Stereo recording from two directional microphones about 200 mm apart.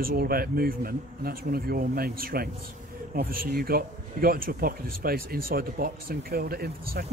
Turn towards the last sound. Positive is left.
turn(degrees=-50)  # may be behind; listen again after turning